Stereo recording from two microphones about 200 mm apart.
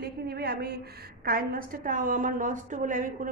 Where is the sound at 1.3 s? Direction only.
45° right (ahead or behind).